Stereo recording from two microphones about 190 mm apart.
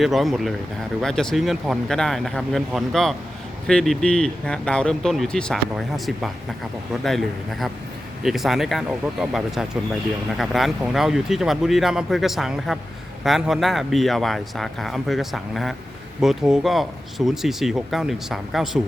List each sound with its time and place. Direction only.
0.0 s speech: centre (ahead or behind)